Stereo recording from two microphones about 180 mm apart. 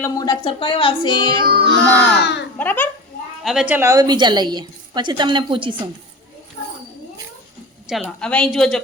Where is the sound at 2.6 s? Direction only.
10° left (ahead or behind).